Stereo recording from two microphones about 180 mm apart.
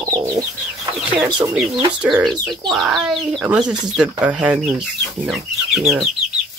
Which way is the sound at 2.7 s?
Centre (ahead or behind).